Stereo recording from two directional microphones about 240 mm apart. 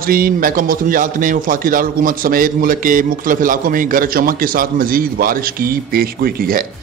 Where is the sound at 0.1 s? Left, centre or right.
Right.